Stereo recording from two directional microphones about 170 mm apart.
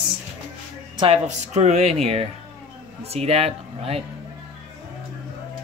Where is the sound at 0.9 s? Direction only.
35° right (ahead or behind).